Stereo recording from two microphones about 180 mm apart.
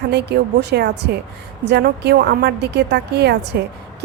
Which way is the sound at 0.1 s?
70° right (ahead or behind).